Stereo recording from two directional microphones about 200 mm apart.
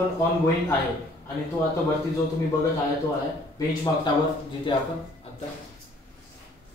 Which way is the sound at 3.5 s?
20° left (ahead or behind).